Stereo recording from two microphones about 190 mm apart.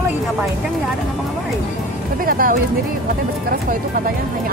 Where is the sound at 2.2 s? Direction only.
50° right (ahead or behind).